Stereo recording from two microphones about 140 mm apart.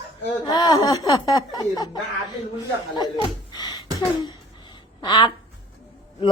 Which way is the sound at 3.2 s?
30° left (ahead or behind).